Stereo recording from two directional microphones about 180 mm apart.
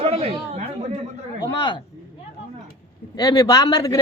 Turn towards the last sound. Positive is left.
turn(degrees=20)  # may be behind; listen again after turning